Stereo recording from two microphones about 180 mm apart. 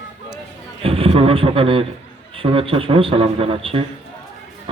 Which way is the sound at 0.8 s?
30° right (ahead or behind).